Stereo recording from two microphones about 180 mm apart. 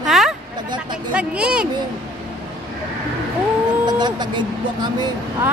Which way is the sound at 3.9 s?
25° right (ahead or behind).